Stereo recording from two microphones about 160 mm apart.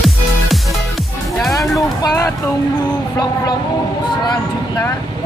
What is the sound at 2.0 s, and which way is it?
Music, 20° left (ahead or behind).